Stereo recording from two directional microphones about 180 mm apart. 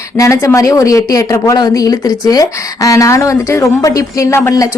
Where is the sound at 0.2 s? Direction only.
15° left (ahead or behind).